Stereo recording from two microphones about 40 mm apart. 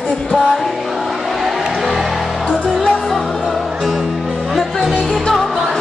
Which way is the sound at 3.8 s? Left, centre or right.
Centre.